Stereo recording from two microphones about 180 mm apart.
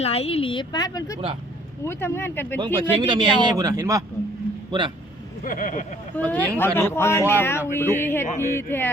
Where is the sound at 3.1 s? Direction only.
25° right (ahead or behind).